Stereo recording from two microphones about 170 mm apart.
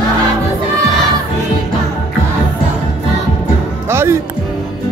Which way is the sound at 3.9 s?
15° right (ahead or behind).